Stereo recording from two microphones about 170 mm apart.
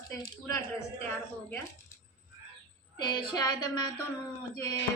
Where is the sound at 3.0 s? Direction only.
25° left (ahead or behind).